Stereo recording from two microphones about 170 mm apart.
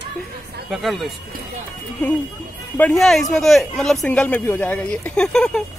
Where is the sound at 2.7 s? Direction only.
5° left (ahead or behind).